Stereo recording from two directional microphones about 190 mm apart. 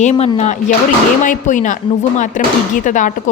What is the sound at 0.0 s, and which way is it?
A woman's voice, 40° left (ahead or behind).